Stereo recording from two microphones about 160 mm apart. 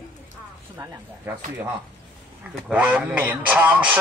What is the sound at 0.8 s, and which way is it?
Speech, 20° right (ahead or behind).